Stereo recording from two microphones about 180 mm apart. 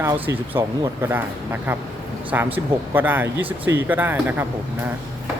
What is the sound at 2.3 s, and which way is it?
Speech, 10° right (ahead or behind).